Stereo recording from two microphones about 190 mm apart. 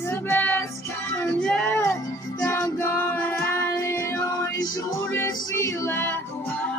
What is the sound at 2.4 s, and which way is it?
Music, 15° left (ahead or behind).